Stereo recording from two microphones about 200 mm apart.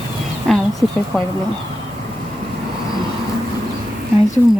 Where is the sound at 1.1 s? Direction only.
Centre (ahead or behind).